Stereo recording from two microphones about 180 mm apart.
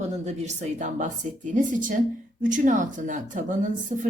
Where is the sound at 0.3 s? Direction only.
40° right (ahead or behind).